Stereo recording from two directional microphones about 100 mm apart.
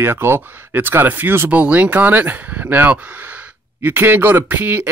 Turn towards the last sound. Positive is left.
turn(degrees=-15)  # may be behind; listen again after turning